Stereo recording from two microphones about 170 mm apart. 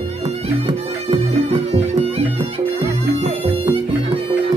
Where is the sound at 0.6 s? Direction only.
30° right (ahead or behind).